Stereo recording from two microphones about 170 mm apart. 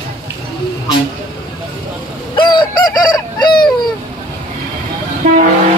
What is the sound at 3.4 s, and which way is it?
Baby cry, 25° left (ahead or behind).